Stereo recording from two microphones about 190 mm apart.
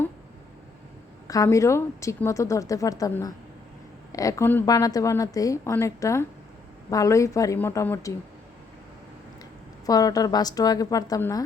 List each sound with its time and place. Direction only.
1.3 s a woman's voice: 15° left (ahead or behind)
9.8 s a woman's voice: 20° left (ahead or behind)